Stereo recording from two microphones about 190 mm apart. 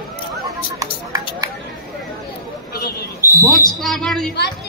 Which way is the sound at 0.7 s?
20° right (ahead or behind).